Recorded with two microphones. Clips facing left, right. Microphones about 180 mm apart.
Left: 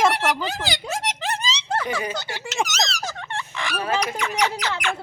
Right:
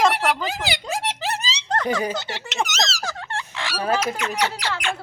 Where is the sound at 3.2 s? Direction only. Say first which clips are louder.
Even; centre (ahead or behind).